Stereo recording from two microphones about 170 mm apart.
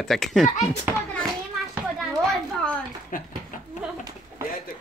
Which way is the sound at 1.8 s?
Centre (ahead or behind).